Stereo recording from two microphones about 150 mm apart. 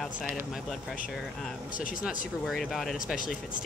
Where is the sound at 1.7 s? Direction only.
65° left (ahead or behind).